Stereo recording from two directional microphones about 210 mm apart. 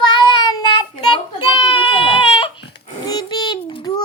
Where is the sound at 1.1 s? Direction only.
25° left (ahead or behind).